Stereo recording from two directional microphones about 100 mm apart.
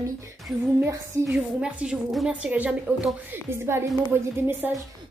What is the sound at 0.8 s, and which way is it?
Speech, 25° right (ahead or behind).